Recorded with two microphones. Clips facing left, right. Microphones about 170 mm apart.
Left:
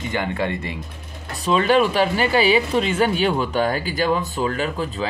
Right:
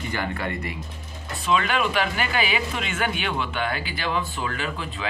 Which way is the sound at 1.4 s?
35° left (ahead or behind).